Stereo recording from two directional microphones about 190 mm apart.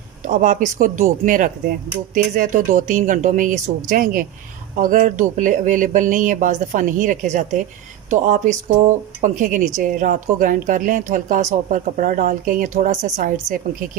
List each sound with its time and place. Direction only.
0.2 s speech: 40° right (ahead or behind)